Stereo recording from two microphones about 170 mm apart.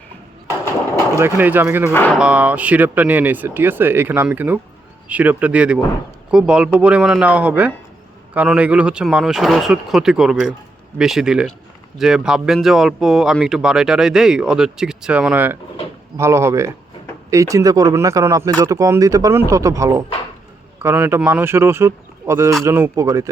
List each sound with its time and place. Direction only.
0.4 s a sound: 15° left (ahead or behind)
1.1 s speech: 10° right (ahead or behind)
1.9 s speech: 10° left (ahead or behind)
2.1 s speech: 5° right (ahead or behind)